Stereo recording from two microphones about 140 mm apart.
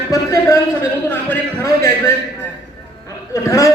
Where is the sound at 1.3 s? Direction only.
20° left (ahead or behind).